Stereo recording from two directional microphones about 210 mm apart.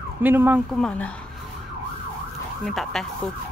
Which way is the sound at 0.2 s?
10° right (ahead or behind).